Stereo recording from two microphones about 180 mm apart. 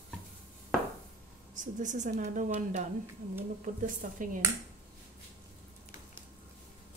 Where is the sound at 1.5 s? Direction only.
45° right (ahead or behind).